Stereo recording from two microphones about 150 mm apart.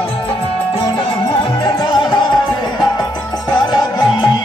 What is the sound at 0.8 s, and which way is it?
Music, 30° left (ahead or behind).